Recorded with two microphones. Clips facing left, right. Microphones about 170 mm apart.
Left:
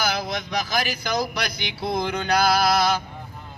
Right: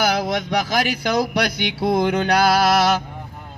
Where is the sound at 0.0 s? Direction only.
65° right (ahead or behind).